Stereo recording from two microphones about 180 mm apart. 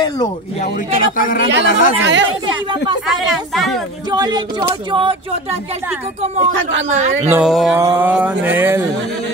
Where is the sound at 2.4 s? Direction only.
25° right (ahead or behind).